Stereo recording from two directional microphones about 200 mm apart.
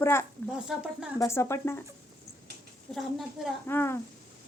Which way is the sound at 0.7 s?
5° right (ahead or behind).